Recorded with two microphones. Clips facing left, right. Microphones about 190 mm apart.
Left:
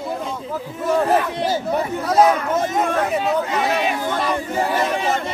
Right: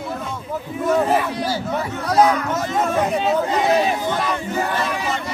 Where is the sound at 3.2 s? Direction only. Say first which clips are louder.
Right 2 dB; 30° right (ahead or behind).